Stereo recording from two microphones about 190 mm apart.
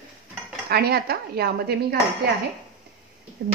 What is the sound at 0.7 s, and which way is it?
Speech, 55° right (ahead or behind).